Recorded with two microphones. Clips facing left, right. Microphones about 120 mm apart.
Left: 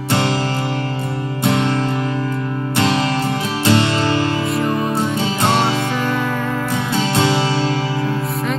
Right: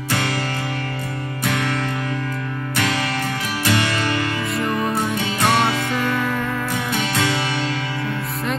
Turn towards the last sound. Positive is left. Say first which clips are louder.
# left 5 dB
turn(degrees=25)  # may be behind; listen again after turning